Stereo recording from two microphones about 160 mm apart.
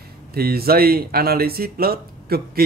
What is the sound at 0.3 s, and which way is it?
Speech, 75° right (ahead or behind).